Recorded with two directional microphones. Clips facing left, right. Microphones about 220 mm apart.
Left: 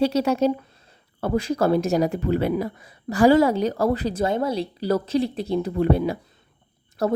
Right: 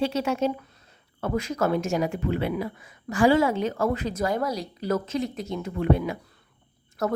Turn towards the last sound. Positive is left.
turn(degrees=30)  # may be behind; listen again after turning